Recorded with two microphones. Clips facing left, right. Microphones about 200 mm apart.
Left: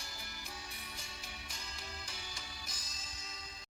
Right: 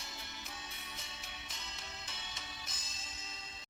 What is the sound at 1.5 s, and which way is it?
Music, 25° right (ahead or behind).